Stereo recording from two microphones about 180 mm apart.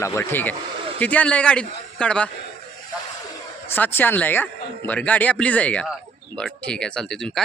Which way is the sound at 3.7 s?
10° left (ahead or behind).